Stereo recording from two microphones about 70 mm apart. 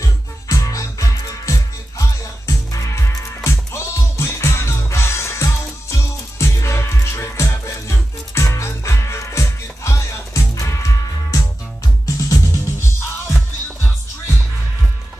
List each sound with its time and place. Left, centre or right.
0.0 s music: left